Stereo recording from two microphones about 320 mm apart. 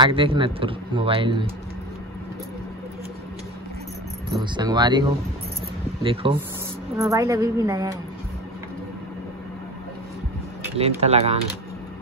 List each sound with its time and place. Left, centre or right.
0.0 s speech: centre
4.3 s speech: centre
6.2 s speech: centre
10.8 s speech: centre